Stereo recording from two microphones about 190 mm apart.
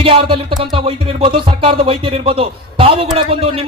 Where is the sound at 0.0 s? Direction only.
25° right (ahead or behind).